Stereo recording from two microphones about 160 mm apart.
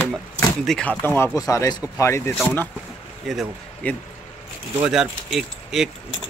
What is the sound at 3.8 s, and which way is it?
Speech, 10° left (ahead or behind).